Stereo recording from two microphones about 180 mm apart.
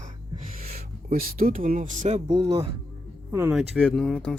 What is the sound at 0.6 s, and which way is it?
Speech, 55° right (ahead or behind).